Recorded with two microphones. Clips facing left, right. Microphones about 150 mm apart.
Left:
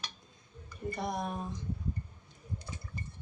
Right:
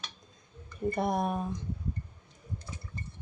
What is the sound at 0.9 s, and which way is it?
Speech, 55° right (ahead or behind).